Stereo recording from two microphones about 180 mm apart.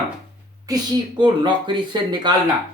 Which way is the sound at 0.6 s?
25° right (ahead or behind).